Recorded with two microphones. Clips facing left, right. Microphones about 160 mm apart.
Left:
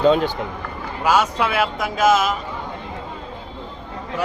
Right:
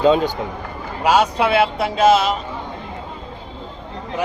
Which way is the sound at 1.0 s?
30° right (ahead or behind).